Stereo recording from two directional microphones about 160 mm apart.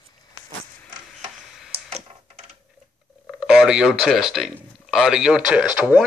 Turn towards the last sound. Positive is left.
turn(degrees=-5)  # may be behind; listen again after turning